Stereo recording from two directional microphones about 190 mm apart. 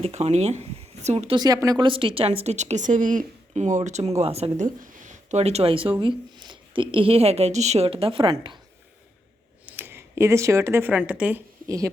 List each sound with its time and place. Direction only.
0.0 s speech: 35° right (ahead or behind)
1.4 s speech: 20° right (ahead or behind)
9.6 s speech: 10° right (ahead or behind)